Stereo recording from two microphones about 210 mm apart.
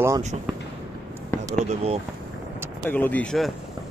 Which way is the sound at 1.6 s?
30° right (ahead or behind).